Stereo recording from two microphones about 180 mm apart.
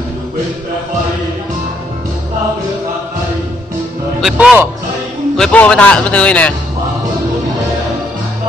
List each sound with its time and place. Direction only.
4.2 s a man's voice: 5° right (ahead or behind)
5.4 s speech: 5° left (ahead or behind)